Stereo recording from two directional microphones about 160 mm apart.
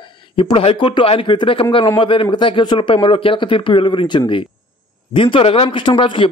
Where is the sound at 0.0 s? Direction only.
30° left (ahead or behind).